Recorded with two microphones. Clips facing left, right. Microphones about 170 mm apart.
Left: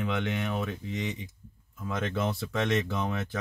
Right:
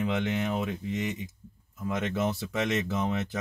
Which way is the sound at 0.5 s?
10° right (ahead or behind).